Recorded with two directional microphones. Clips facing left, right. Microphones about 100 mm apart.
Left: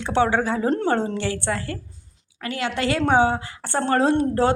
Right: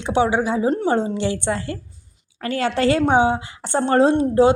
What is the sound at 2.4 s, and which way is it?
Speech, 35° right (ahead or behind).